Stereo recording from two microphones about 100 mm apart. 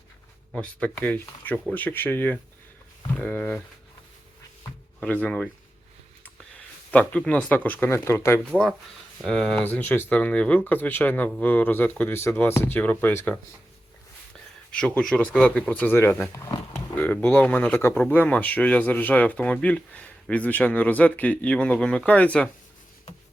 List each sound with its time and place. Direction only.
0.5 s speech: 10° left (ahead or behind)
4.9 s speech: 10° left (ahead or behind)
7.1 s speech: 10° left (ahead or behind)
9.2 s speech: 5° left (ahead or behind)
9.6 s speech: 20° left (ahead or behind)
14.7 s speech: 10° left (ahead or behind)